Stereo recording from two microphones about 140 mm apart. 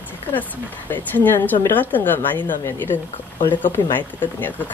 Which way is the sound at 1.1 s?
15° left (ahead or behind).